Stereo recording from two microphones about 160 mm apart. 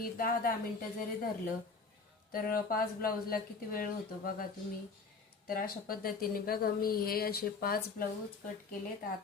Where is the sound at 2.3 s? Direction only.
65° left (ahead or behind).